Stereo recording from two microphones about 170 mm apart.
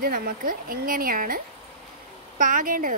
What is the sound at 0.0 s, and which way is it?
A woman's voice, 55° right (ahead or behind).